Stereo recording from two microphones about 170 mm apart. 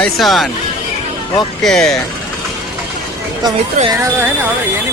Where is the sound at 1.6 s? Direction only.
5° left (ahead or behind).